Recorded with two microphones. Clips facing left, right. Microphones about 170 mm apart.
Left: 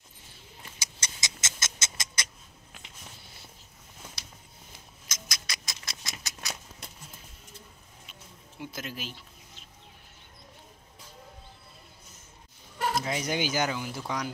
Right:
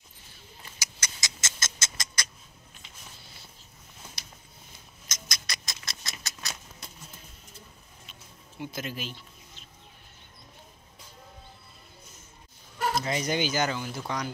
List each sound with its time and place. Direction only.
0.7 s a sound: 25° left (ahead or behind)
5.0 s rodents: 5° left (ahead or behind)
8.1 s music: centre (ahead or behind)
12.7 s speech: 5° left (ahead or behind)